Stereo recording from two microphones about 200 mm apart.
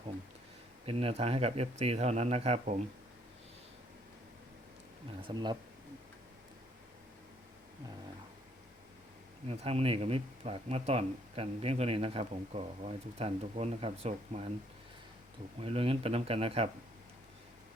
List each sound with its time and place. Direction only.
0.9 s speech: 30° right (ahead or behind)
5.3 s speech: 20° right (ahead or behind)
9.5 s speech: 30° right (ahead or behind)
15.6 s speech: 30° right (ahead or behind)